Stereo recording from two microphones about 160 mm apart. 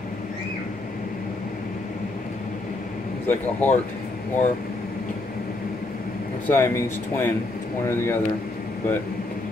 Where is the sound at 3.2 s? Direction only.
10° left (ahead or behind).